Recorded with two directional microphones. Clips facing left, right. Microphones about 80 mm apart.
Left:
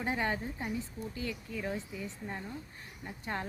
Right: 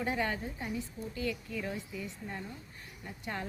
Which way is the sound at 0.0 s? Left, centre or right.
Left.